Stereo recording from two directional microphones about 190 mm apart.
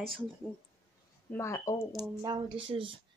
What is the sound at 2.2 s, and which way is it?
Speech, 25° right (ahead or behind).